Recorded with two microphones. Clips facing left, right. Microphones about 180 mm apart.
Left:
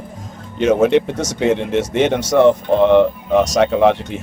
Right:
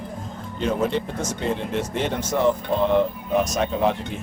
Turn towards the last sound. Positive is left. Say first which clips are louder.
# left 8 dB
turn(degrees=75)  # may be behind; listen again after turning